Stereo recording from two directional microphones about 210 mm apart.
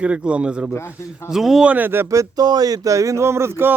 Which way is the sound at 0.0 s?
5° right (ahead or behind).